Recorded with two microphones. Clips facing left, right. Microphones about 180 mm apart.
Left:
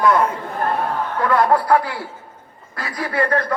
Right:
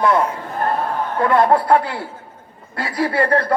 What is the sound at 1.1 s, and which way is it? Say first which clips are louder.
A man's voice: right 2 dB; 25° right (ahead or behind).